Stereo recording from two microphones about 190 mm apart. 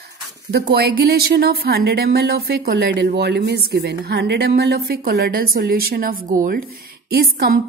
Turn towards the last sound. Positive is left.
turn(degrees=-55)  # may be behind; listen again after turning